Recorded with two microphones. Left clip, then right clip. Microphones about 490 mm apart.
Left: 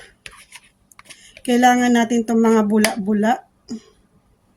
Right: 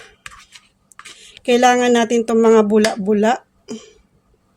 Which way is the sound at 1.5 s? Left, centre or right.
Left.